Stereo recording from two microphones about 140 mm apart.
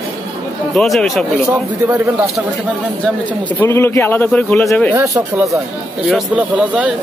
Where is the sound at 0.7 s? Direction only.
Centre (ahead or behind).